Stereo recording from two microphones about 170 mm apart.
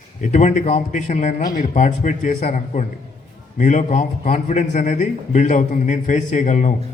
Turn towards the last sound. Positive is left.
turn(degrees=45)  # may be behind; listen again after turning